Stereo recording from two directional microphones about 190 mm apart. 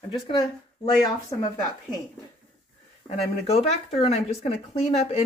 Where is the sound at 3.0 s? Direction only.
35° left (ahead or behind).